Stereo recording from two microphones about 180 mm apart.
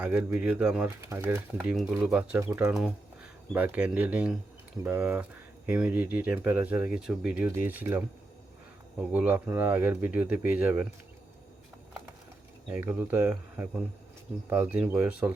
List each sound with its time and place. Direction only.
0.0 s speech: 10° right (ahead or behind)
12.6 s speech: 10° right (ahead or behind)